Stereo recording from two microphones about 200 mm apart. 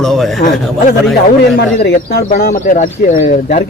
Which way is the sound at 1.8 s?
50° left (ahead or behind).